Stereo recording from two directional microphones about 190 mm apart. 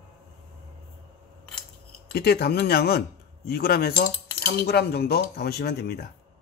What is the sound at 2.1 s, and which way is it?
Cutlery, 55° left (ahead or behind).